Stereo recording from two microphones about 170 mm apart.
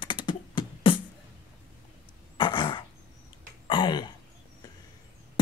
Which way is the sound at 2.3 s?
25° left (ahead or behind).